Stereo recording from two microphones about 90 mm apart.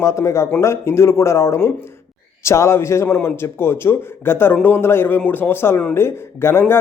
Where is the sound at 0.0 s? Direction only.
35° left (ahead or behind).